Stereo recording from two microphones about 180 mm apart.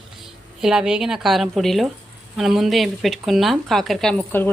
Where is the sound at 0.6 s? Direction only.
5° right (ahead or behind).